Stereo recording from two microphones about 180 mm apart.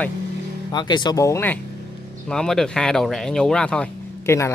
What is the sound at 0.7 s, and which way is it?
Speech, 25° left (ahead or behind).